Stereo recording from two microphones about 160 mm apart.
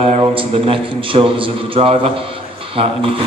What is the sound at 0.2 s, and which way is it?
A man's voice, 35° right (ahead or behind).